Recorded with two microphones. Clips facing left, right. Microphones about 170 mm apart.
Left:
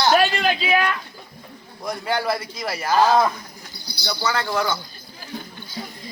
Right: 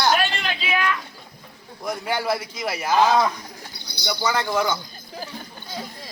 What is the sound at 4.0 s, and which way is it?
Speech, 15° right (ahead or behind).